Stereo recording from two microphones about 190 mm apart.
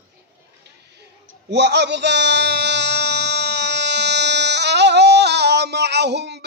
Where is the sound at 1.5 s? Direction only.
65° right (ahead or behind).